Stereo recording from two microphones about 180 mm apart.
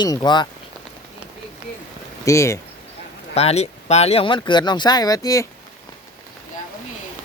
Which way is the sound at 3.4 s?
35° left (ahead or behind).